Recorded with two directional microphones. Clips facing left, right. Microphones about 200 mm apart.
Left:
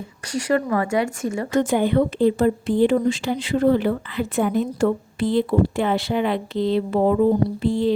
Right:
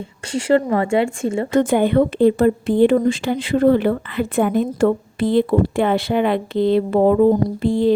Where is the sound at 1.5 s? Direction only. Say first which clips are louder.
Right 3 dB; 55° right (ahead or behind).